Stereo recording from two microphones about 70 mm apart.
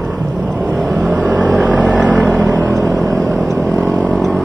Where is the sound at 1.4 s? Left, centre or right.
Centre.